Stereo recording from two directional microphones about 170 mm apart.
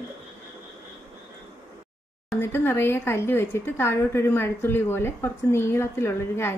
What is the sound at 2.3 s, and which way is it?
A woman's voice, 15° left (ahead or behind).